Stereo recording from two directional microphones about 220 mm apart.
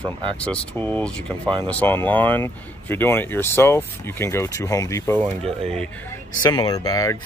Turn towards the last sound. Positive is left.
turn(degrees=15)  # may be behind; listen again after turning